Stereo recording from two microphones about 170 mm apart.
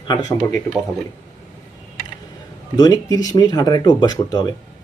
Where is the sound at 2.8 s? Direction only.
20° left (ahead or behind).